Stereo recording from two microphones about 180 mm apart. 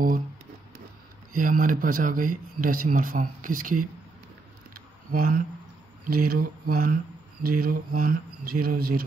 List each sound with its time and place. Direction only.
1.3 s speech: 50° right (ahead or behind)
4.7 s a sound: 55° right (ahead or behind)
6.0 s speech: 55° right (ahead or behind)